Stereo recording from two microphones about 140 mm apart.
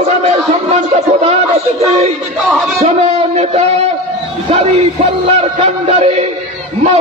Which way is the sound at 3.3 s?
50° right (ahead or behind).